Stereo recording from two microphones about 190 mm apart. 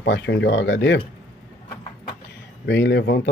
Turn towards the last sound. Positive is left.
turn(degrees=65)  # may be behind; listen again after turning